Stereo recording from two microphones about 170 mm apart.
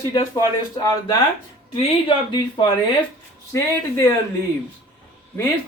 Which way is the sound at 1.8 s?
30° left (ahead or behind).